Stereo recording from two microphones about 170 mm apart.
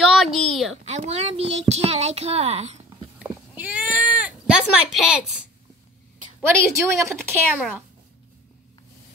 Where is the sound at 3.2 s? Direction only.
10° right (ahead or behind).